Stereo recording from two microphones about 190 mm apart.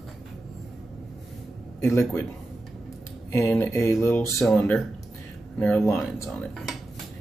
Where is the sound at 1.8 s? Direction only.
15° left (ahead or behind).